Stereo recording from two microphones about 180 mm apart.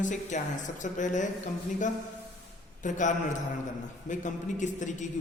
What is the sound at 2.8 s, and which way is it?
A man's voice, 45° left (ahead or behind).